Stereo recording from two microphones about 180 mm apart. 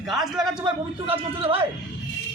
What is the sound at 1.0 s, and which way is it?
Speech, 30° right (ahead or behind).